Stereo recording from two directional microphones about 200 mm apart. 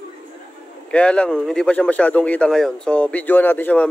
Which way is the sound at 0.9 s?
5° left (ahead or behind).